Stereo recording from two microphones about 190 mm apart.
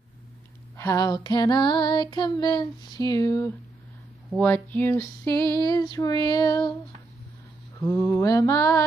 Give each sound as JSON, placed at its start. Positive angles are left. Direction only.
{"t": 0.7, "sound": "female singing", "side_deg": 15}
{"t": 7.8, "sound": "female singing", "side_deg": 15}